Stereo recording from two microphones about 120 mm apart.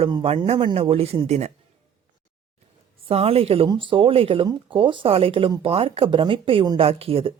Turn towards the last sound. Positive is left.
turn(degrees=-55)  # may be behind; listen again after turning